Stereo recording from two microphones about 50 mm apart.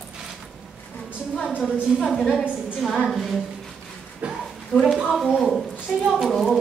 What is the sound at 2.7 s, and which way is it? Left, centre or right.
Speech, centre.